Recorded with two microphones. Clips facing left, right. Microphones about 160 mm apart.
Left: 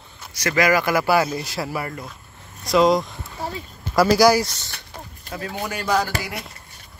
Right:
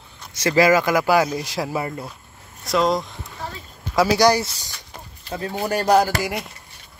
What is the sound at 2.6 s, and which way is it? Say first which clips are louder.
Speech: left 3 dB; centre (ahead or behind).